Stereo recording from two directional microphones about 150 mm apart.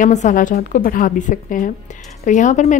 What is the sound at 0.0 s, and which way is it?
A woman's voice, 55° left (ahead or behind).